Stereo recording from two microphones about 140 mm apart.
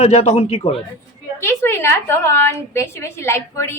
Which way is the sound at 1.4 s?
15° left (ahead or behind).